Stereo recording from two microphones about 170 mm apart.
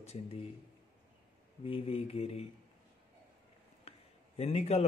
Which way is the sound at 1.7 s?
35° left (ahead or behind).